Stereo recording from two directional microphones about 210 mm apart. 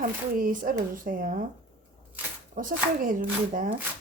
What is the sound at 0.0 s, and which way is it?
Speech, 40° right (ahead or behind).